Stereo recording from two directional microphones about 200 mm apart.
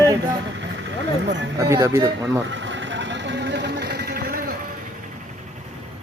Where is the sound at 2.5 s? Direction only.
65° right (ahead or behind); by 4.5 s 45° right (ahead or behind).